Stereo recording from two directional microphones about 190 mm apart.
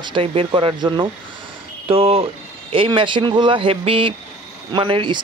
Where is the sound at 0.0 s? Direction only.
30° right (ahead or behind).